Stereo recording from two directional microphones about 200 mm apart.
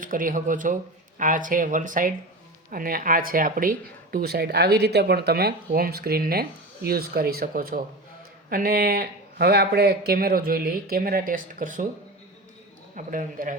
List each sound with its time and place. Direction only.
0.0 s speech: 45° right (ahead or behind)
13.0 s speech: 40° right (ahead or behind)